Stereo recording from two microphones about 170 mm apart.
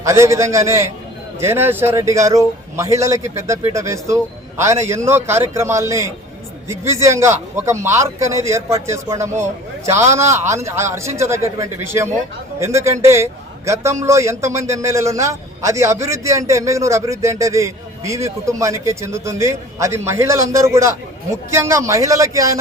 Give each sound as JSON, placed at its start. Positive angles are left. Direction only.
{"t": 0.0, "sound": "a man's voice", "side_deg": -15}